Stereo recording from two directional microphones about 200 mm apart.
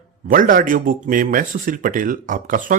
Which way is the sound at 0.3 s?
45° right (ahead or behind).